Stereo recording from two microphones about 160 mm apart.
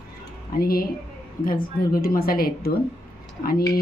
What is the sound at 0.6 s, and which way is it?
Speech, 65° left (ahead or behind).